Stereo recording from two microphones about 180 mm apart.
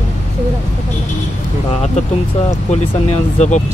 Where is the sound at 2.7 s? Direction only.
40° left (ahead or behind).